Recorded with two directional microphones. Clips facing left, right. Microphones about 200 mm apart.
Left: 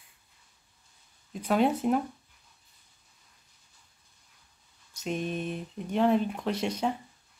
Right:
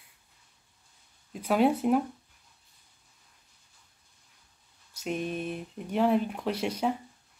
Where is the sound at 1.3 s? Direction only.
10° right (ahead or behind).